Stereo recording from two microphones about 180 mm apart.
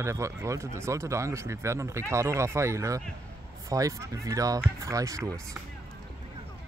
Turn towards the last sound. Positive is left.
turn(degrees=-15)  # may be behind; listen again after turning